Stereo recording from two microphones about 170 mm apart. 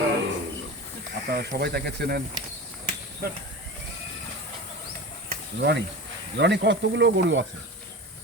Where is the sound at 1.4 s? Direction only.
70° right (ahead or behind).